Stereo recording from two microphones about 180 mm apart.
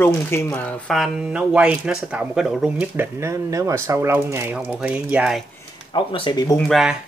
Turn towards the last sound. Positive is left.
turn(degrees=0)  # may be behind; listen again after turning